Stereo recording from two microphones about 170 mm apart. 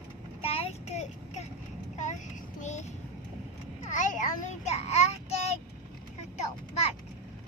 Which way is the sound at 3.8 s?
45° left (ahead or behind).